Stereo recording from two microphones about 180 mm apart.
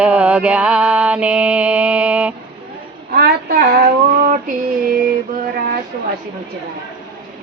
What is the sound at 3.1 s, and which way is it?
Female singing, 60° right (ahead or behind).